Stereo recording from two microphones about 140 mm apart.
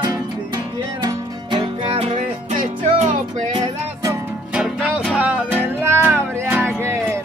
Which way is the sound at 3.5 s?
30° right (ahead or behind).